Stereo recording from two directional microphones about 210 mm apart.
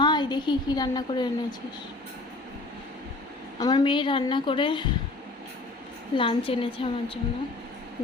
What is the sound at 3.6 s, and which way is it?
A woman's voice, 20° left (ahead or behind).